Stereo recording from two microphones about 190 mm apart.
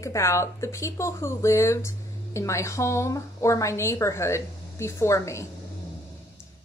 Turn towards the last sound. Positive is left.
turn(degrees=15)  # may be behind; listen again after turning